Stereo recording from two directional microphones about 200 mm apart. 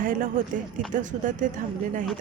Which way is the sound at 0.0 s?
40° right (ahead or behind).